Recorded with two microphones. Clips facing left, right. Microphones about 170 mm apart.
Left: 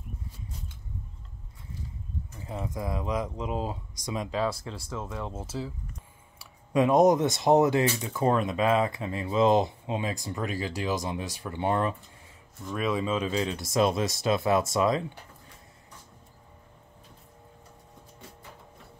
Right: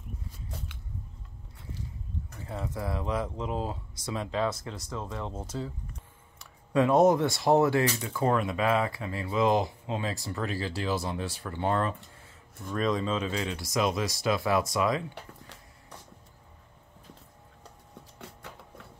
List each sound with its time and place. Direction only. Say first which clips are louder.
2.4 s speech: left 1 dB; 15° left (ahead or behind)
13.4 s speech: left 4 dB; 25° left (ahead or behind)
15.4 s printer: right 1 dB; 80° right
18.4 s music: right 3 dB; 75° right (ahead or behind)